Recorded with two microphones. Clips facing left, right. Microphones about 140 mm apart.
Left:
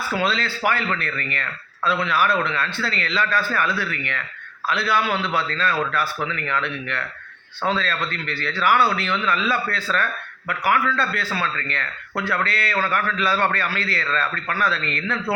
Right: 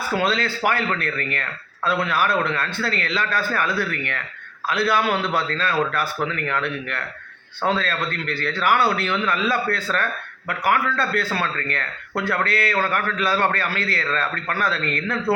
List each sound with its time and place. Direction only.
0.1 s speech: 50° right (ahead or behind)